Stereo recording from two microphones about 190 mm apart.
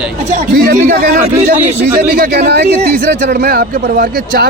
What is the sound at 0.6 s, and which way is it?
Speech, 60° right (ahead or behind).